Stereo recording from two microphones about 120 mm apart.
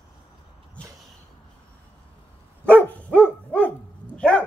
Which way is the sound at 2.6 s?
10° left (ahead or behind).